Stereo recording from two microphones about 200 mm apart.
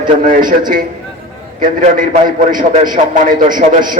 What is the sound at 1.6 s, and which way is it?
A man's voice, 40° right (ahead or behind).